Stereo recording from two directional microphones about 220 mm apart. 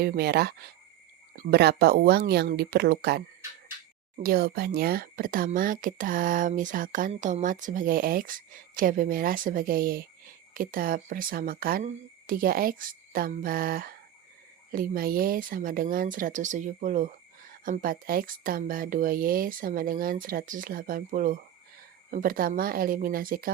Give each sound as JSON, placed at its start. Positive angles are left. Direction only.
{"t": 0.0, "sound": "speech", "side_deg": -45}